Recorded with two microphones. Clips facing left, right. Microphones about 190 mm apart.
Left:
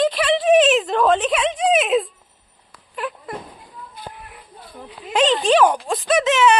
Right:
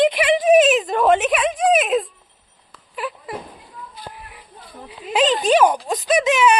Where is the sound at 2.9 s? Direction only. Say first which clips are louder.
Even; 5° right (ahead or behind).